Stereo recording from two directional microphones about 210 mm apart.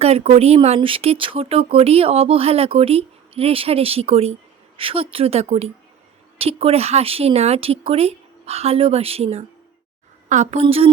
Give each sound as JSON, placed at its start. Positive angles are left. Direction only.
{"t": 0.0, "sound": "a woman's voice", "side_deg": -30}